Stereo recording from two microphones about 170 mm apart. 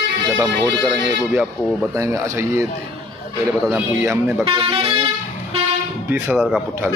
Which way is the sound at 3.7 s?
15° right (ahead or behind).